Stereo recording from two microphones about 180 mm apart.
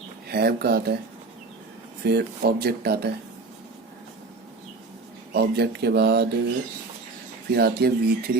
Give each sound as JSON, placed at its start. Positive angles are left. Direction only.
{"t": 0.3, "sound": "speech", "side_deg": -60}
{"t": 2.0, "sound": "speech", "side_deg": -60}
{"t": 5.3, "sound": "speech", "side_deg": -65}
{"t": 7.5, "sound": "speech", "side_deg": -60}